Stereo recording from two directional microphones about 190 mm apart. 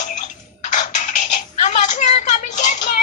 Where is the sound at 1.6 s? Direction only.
40° left (ahead or behind).